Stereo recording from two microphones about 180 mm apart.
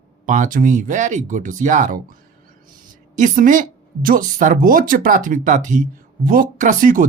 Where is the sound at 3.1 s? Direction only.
45° right (ahead or behind).